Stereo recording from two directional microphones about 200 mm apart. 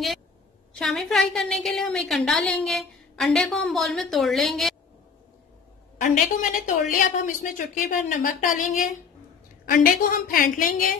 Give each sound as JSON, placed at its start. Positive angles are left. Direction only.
{"t": 0.7, "sound": "a woman's voice", "side_deg": 0}
{"t": 5.9, "sound": "a woman's voice", "side_deg": 40}